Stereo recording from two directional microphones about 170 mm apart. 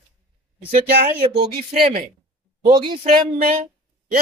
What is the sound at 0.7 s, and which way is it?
Speech, 65° right (ahead or behind).